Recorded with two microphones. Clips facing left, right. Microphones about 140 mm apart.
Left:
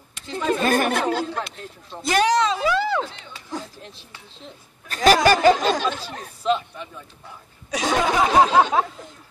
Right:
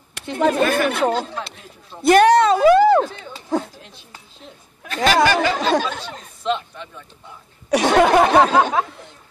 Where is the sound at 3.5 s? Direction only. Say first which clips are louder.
Right 10 dB; 60° right (ahead or behind).